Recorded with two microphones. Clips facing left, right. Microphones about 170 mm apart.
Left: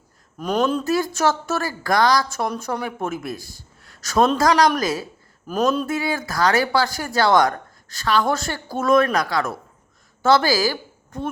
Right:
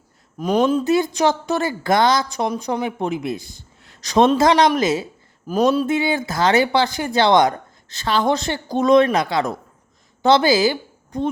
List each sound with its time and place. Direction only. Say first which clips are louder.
0.3 s a woman's voice: right 3 dB; 10° right (ahead or behind)